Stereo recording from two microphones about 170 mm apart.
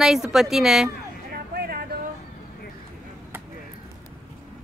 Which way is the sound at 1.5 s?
65° right (ahead or behind).